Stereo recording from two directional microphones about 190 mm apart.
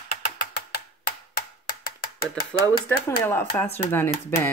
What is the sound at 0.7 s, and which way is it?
Tick-tock, 55° left (ahead or behind).